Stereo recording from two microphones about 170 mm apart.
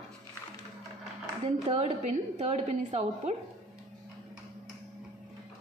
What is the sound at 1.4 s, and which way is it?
A woman's voice, 40° right (ahead or behind).